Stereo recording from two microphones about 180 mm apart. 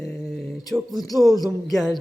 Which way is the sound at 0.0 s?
Centre (ahead or behind).